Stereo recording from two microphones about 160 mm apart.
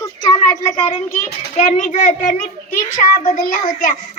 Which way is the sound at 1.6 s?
50° left (ahead or behind).